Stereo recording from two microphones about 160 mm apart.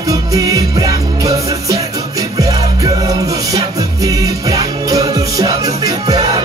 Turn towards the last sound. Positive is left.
turn(degrees=-25)  # may be behind; listen again after turning